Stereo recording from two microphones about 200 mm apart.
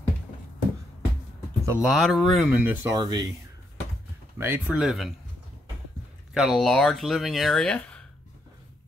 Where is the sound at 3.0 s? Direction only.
20° right (ahead or behind).